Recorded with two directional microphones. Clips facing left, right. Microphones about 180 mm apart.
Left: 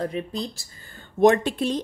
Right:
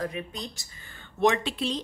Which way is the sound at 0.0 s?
30° left (ahead or behind).